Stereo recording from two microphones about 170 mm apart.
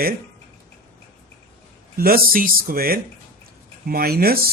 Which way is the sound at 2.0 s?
60° right (ahead or behind).